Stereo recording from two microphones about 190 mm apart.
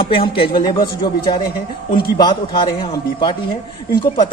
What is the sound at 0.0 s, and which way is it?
A man's voice, 30° left (ahead or behind).